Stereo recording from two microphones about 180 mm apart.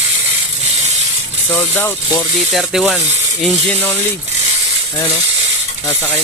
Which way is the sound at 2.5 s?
Centre (ahead or behind).